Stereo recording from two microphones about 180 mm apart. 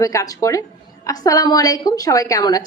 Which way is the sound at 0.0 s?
20° left (ahead or behind).